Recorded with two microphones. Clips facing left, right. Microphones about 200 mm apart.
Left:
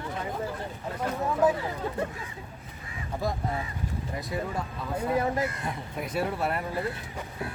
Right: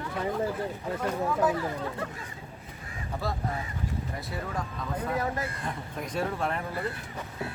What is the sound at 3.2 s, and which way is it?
Speech, 15° left (ahead or behind).